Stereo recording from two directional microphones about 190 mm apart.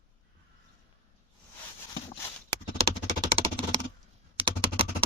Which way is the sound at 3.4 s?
30° right (ahead or behind).